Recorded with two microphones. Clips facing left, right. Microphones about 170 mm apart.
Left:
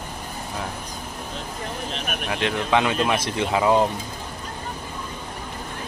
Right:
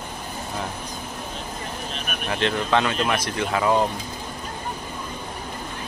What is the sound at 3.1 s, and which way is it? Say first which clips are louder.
Speech: left 2 dB; 25° left (ahead or behind).